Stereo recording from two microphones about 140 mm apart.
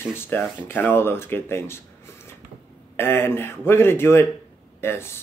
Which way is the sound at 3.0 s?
15° left (ahead or behind).